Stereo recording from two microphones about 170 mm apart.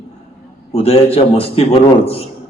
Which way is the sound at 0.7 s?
35° left (ahead or behind).